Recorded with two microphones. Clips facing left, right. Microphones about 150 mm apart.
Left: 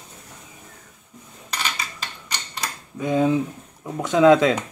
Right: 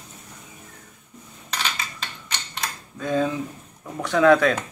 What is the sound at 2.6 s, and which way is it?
Cutlery, 15° left (ahead or behind).